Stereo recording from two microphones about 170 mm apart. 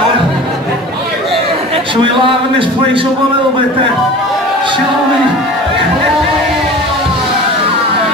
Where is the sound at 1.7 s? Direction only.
30° right (ahead or behind).